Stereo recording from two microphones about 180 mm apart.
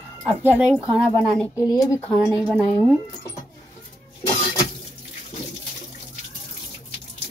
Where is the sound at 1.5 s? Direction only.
20° left (ahead or behind).